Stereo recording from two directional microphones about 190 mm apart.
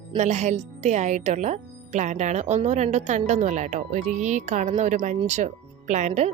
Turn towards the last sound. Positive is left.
turn(degrees=-35)  # may be behind; listen again after turning